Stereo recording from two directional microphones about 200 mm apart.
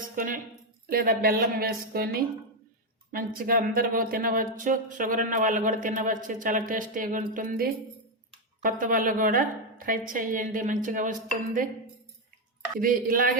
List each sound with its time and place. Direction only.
0.2 s a woman's voice: 40° right (ahead or behind)
12.8 s a woman's voice: 45° right (ahead or behind)